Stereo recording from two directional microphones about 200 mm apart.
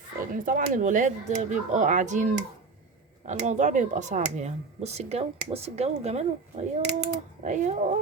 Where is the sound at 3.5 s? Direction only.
40° right (ahead or behind).